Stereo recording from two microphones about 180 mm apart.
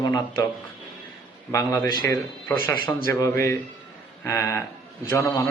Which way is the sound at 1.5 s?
20° left (ahead or behind).